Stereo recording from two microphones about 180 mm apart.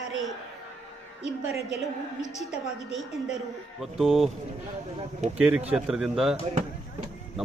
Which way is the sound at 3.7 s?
Centre (ahead or behind).